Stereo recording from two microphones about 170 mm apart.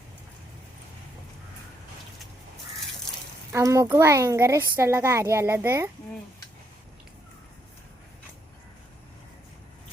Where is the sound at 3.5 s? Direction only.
20° right (ahead or behind).